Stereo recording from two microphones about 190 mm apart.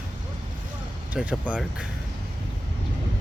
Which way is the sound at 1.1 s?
5° right (ahead or behind).